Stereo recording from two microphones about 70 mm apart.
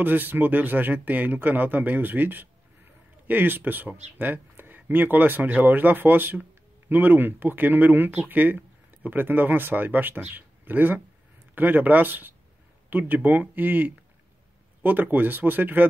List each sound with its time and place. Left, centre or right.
0.0 s speech: right